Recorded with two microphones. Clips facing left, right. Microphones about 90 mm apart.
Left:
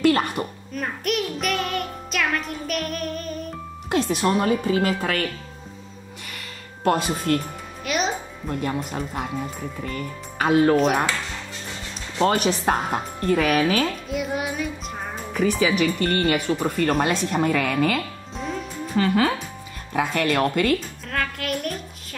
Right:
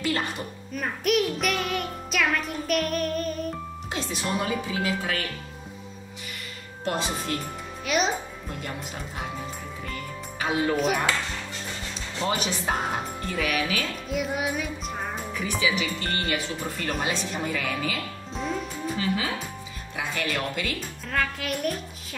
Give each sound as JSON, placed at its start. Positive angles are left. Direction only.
{"t": 0.0, "sound": "music", "side_deg": 55}
{"t": 0.7, "sound": "music", "side_deg": 0}
{"t": 3.9, "sound": "speech", "side_deg": 55}
{"t": 6.8, "sound": "speech", "side_deg": 55}
{"t": 7.8, "sound": "music", "side_deg": 0}
{"t": 8.5, "sound": "speech", "side_deg": 55}
{"t": 10.4, "sound": "speech", "side_deg": 55}
{"t": 12.4, "sound": "speech", "side_deg": 55}
{"t": 14.0, "sound": "music", "side_deg": 0}
{"t": 15.8, "sound": "speech", "side_deg": 50}
{"t": 18.3, "sound": "music", "side_deg": 0}
{"t": 18.9, "sound": "speech", "side_deg": 50}
{"t": 21.1, "sound": "a child's voice", "side_deg": 0}